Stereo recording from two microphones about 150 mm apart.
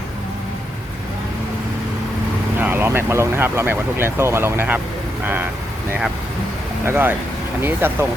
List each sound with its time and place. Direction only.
2.6 s speech: 15° right (ahead or behind)
6.8 s speech: 15° right (ahead or behind)